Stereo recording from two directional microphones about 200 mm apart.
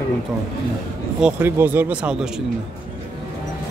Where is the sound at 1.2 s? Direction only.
10° right (ahead or behind).